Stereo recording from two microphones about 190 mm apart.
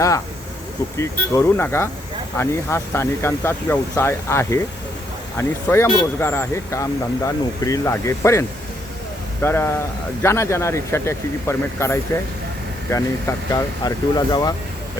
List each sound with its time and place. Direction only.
0.9 s speech: 15° left (ahead or behind)